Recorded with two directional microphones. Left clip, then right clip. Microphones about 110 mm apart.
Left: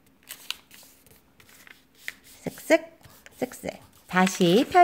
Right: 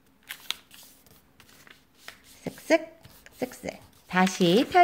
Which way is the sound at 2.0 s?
35° left (ahead or behind).